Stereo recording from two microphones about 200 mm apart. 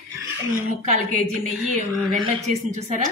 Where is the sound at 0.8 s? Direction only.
40° right (ahead or behind).